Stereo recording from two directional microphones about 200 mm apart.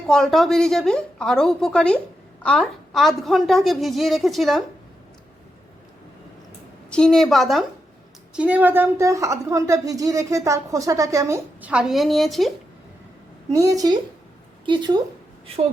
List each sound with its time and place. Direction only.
0.1 s a woman's voice: centre (ahead or behind)
6.9 s a woman's voice: 5° left (ahead or behind)
13.5 s a woman's voice: 15° right (ahead or behind)